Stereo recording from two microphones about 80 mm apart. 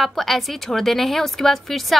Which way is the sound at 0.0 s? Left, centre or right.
Centre.